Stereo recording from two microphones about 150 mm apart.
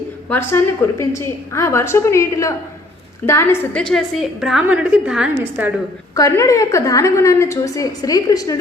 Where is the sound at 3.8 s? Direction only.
Centre (ahead or behind).